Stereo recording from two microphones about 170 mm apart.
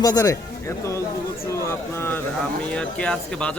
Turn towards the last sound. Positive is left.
turn(degrees=5)  # may be behind; listen again after turning